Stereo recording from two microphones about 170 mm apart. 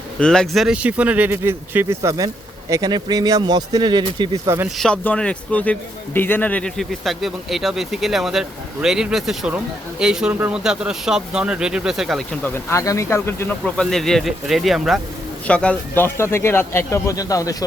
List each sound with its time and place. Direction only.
0.2 s speech: 5° left (ahead or behind); by 4.5 s 25° right (ahead or behind)
4.8 s speech: 5° left (ahead or behind)
13.9 s speech: centre (ahead or behind); by 17.7 s 20° left (ahead or behind)